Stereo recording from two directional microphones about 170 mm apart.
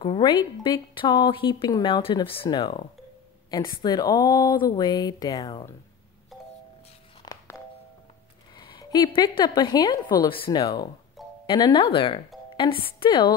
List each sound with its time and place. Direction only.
0.0 s a woman's voice: 25° left (ahead or behind)
7.3 s music: 25° left (ahead or behind)
8.5 s a woman's voice: 25° left (ahead or behind)